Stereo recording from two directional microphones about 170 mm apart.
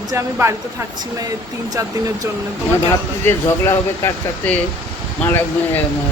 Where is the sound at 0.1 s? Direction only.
15° right (ahead or behind).